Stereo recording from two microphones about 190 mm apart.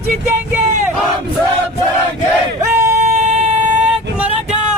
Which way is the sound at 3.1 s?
35° right (ahead or behind).